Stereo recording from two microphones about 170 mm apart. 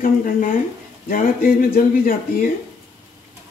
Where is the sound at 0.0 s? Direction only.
55° left (ahead or behind).